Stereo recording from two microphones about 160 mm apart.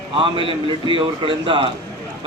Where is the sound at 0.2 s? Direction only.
30° right (ahead or behind).